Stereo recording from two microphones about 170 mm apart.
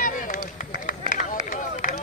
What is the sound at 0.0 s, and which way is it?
Run, 55° left (ahead or behind).